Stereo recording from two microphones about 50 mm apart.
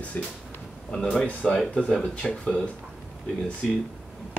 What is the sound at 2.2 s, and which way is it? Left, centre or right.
Speech, centre.